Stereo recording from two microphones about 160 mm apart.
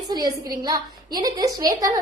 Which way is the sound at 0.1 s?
25° right (ahead or behind).